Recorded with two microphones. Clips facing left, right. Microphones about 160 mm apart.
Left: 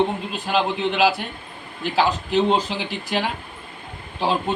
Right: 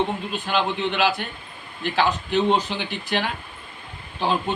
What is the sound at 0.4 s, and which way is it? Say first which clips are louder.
Speech: left 3 dB; 35° left (ahead or behind).